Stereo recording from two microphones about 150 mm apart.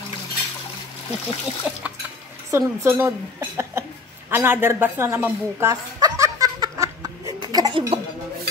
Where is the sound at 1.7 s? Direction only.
10° right (ahead or behind).